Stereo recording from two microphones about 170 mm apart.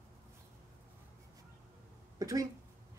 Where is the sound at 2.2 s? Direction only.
20° right (ahead or behind).